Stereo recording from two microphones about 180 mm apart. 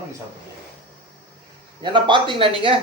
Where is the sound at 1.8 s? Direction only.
25° right (ahead or behind).